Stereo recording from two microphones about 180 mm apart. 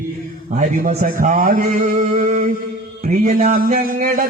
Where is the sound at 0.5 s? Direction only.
40° right (ahead or behind).